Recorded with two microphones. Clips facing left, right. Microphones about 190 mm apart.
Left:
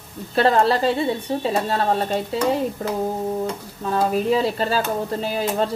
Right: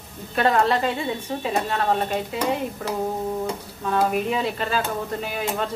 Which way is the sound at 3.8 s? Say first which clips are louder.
Left 2 dB; 35° left (ahead or behind).